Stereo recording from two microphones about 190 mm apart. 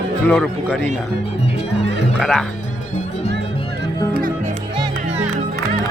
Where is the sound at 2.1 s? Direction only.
Centre (ahead or behind).